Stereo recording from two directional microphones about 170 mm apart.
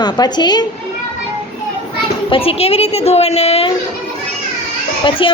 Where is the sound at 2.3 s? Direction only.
35° left (ahead or behind).